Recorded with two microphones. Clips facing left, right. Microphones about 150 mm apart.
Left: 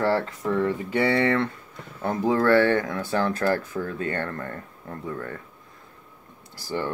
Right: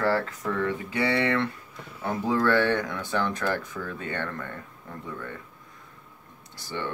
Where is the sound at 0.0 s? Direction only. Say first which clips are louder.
Left 2 dB; 25° left (ahead or behind).